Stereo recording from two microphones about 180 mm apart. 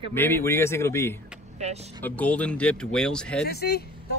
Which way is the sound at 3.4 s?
60° left (ahead or behind).